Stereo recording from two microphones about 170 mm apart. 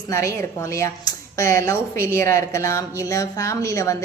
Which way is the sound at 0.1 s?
15° left (ahead or behind).